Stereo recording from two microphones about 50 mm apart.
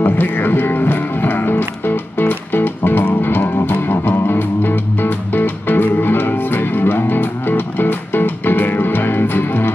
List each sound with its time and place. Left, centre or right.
0.0 s music: left